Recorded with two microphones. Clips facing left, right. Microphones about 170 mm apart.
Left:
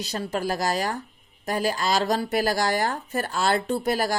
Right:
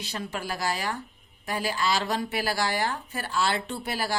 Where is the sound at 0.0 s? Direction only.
40° left (ahead or behind).